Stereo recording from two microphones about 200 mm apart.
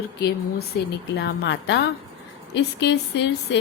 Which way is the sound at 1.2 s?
60° left (ahead or behind).